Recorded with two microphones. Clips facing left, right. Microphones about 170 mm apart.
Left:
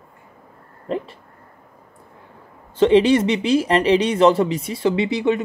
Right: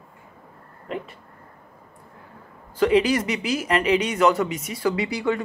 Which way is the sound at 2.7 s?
25° left (ahead or behind).